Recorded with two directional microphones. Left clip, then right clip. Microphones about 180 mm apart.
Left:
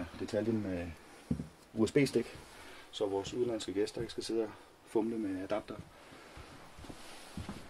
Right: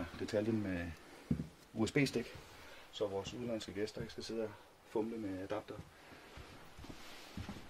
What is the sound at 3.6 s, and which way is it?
Speech, 45° left (ahead or behind).